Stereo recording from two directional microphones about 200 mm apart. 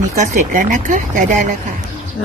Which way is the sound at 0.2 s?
40° right (ahead or behind).